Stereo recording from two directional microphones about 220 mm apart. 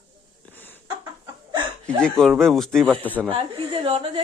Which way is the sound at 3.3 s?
25° right (ahead or behind).